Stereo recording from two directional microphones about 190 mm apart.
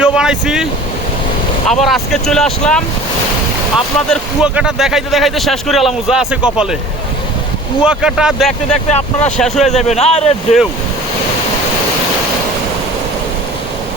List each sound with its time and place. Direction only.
0.0 s speech: 5° right (ahead or behind)
7.9 s speech: 5° right (ahead or behind)
8.9 s a man's voice: 35° left (ahead or behind)
9.4 s speech: centre (ahead or behind)
9.7 s a man's voice: 35° left (ahead or behind)